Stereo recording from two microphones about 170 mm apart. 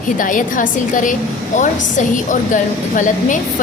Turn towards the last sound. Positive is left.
turn(degrees=50)  # may be behind; listen again after turning